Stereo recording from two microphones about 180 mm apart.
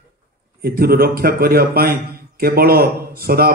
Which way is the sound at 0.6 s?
55° right (ahead or behind).